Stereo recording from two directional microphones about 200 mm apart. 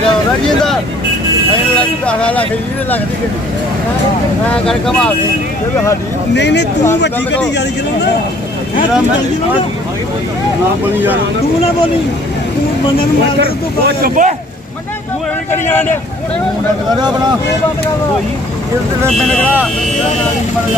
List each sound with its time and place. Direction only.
1.8 s speech: 5° left (ahead or behind)
4.6 s speech: 5° left (ahead or behind)
6.3 s speech: 60° left (ahead or behind)
13.8 s speech: 45° right (ahead or behind)
15.6 s speech: 10° left (ahead or behind)
19.0 s speech: 5° left (ahead or behind)